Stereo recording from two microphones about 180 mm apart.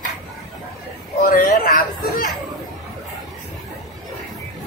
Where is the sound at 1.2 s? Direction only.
50° left (ahead or behind).